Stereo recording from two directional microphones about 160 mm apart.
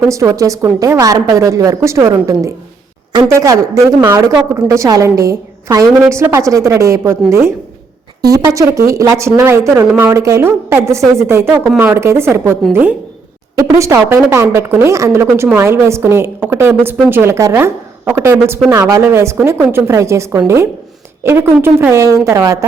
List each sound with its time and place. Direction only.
0.1 s a woman's voice: 20° right (ahead or behind)
13.6 s a woman's voice: 20° right (ahead or behind)